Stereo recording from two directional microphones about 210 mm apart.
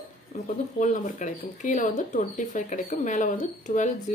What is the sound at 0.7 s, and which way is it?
A woman's voice, 35° left (ahead or behind).